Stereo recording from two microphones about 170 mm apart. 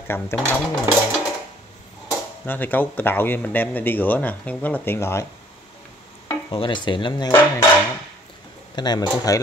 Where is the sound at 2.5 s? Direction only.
10° left (ahead or behind).